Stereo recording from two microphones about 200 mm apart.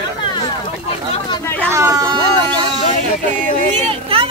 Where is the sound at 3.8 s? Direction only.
30° right (ahead or behind).